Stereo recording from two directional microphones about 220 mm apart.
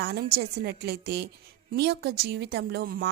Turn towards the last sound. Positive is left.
turn(degrees=-45)  # may be behind; listen again after turning